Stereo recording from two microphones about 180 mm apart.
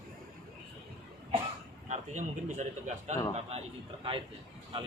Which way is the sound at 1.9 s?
40° right (ahead or behind).